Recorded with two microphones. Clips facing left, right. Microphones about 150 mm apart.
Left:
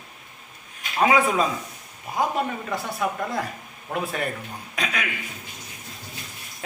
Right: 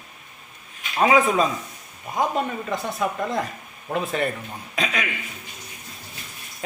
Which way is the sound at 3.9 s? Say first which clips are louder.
Right 3 dB; 5° left (ahead or behind).